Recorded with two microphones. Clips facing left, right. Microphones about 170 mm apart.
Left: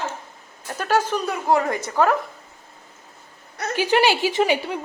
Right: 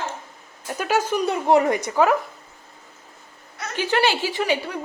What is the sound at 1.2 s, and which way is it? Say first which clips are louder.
Speech: right 3 dB; 20° right (ahead or behind).